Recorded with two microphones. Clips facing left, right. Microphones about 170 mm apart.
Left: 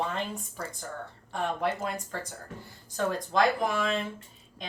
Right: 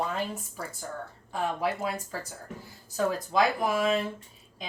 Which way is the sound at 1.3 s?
5° right (ahead or behind).